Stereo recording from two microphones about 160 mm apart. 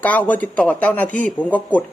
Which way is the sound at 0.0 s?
10° left (ahead or behind).